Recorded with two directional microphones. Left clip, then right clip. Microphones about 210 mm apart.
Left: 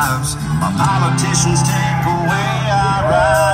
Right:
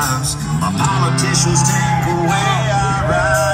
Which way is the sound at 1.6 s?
50° left (ahead or behind).